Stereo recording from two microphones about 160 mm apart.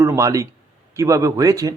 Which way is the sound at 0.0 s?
20° right (ahead or behind).